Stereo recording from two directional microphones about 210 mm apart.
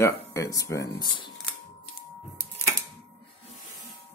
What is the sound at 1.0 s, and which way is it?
Speech, 25° left (ahead or behind).